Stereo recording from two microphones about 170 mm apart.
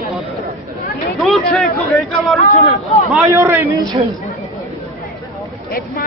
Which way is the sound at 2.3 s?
50° left (ahead or behind).